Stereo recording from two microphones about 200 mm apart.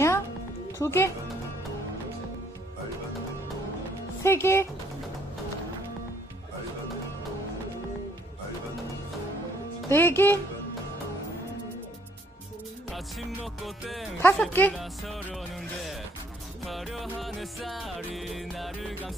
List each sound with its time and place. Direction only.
0.7 s speech: 15° left (ahead or behind)
4.2 s speech: 15° left (ahead or behind)
9.8 s speech: 10° left (ahead or behind)
12.9 s music: centre (ahead or behind)